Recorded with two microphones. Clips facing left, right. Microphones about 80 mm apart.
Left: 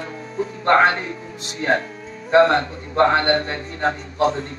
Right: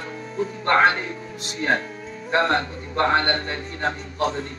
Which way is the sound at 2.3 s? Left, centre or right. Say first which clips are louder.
Left 6 dB; left.